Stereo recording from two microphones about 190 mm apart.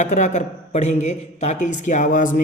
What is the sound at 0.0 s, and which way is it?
A man's voice, 40° left (ahead or behind).